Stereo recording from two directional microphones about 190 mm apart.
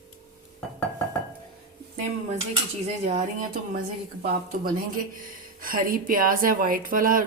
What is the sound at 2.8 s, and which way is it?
Speech, 45° right (ahead or behind).